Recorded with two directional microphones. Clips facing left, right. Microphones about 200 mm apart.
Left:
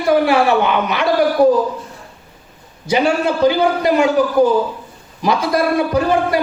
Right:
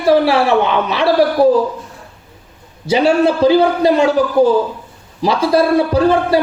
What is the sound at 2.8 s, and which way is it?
A man's voice, 30° right (ahead or behind).